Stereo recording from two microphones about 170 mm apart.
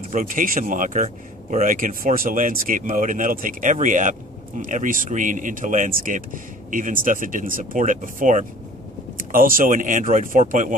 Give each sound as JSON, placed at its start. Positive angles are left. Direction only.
{"t": 0.1, "sound": "speech", "side_deg": -50}